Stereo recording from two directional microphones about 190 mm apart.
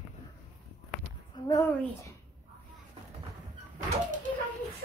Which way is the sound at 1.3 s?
15° left (ahead or behind).